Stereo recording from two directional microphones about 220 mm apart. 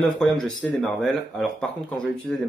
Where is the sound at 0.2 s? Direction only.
Centre (ahead or behind).